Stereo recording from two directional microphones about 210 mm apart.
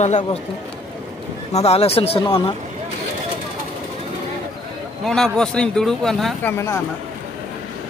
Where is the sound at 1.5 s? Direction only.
30° left (ahead or behind).